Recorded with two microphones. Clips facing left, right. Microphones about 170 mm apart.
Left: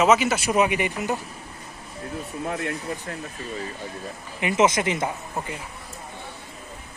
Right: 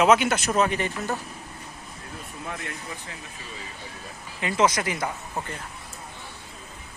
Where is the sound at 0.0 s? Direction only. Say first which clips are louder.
Even; centre (ahead or behind).